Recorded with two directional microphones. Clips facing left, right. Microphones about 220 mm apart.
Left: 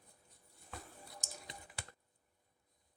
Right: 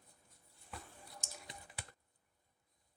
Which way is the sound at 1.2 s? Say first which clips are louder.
Left 1 dB; 40° left (ahead or behind).